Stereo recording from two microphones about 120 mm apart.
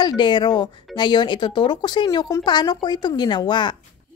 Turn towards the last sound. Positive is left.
turn(degrees=40)  # may be behind; listen again after turning